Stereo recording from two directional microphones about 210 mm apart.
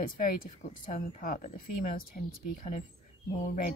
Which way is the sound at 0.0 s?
45° left (ahead or behind).